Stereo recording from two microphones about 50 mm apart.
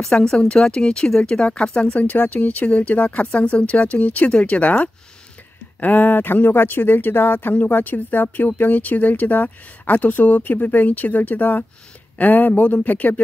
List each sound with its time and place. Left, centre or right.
0.0 s speech: centre
2.0 s speech: left